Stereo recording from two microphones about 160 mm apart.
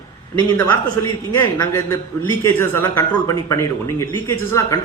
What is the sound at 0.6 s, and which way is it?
A woman's voice, 20° left (ahead or behind).